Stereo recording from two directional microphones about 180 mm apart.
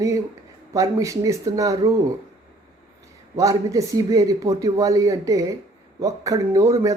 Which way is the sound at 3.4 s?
20° right (ahead or behind).